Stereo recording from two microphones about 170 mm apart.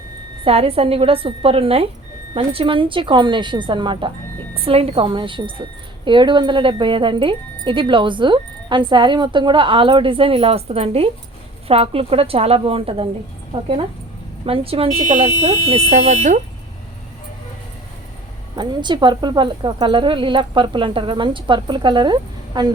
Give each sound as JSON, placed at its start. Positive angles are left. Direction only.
{"t": 0.4, "sound": "speech", "side_deg": -35}
{"t": 14.4, "sound": "speech", "side_deg": -35}
{"t": 18.5, "sound": "speech", "side_deg": -25}